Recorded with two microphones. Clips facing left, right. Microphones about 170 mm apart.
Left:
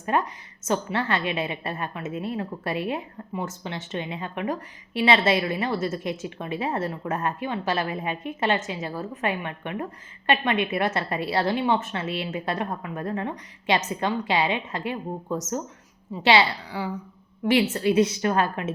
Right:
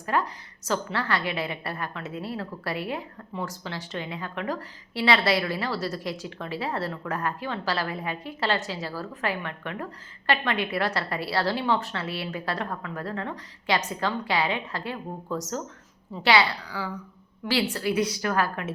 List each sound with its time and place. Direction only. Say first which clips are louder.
0.0 s a woman's voice: left 2 dB; 20° left (ahead or behind)